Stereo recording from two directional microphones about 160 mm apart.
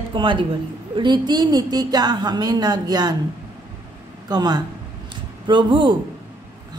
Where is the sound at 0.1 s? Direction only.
30° right (ahead or behind).